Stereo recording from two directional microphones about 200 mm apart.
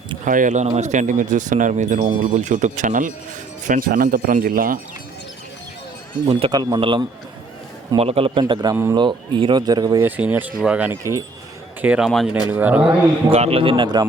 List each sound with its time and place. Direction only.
0.3 s a man's voice: 40° right (ahead or behind)
6.2 s speech: 25° right (ahead or behind)
8.7 s speech: 10° right (ahead or behind)
9.0 s speech: 25° right (ahead or behind); by 12.9 s 10° right (ahead or behind)
13.3 s speech: 30° right (ahead or behind)